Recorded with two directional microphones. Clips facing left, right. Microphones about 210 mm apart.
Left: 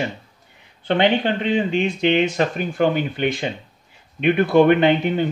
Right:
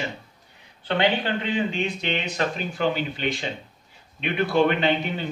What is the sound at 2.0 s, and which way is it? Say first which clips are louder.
Speech: left 9 dB; 50° left (ahead or behind).